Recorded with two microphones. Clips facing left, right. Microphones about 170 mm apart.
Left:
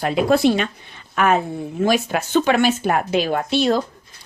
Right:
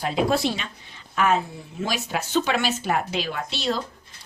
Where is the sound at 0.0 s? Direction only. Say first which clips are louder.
Left 6 dB; 60° left (ahead or behind).